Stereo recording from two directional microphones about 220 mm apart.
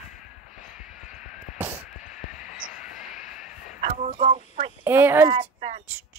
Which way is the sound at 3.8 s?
35° right (ahead or behind).